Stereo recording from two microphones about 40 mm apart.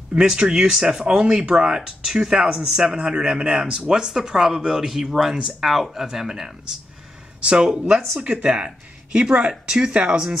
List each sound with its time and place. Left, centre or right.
0.1 s speech: right
7.3 s speech: right